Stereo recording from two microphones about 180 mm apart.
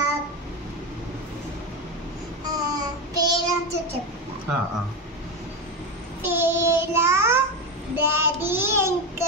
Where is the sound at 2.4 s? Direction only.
20° right (ahead or behind).